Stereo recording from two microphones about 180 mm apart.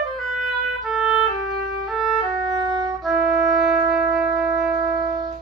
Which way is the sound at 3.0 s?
Centre (ahead or behind).